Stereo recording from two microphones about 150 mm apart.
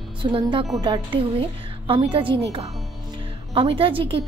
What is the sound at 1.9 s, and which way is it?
A woman's voice, 35° right (ahead or behind).